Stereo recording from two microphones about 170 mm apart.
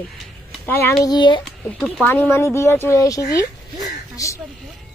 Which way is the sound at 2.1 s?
10° left (ahead or behind).